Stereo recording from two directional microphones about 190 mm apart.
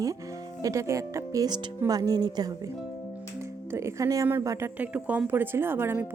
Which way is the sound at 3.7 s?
15° right (ahead or behind).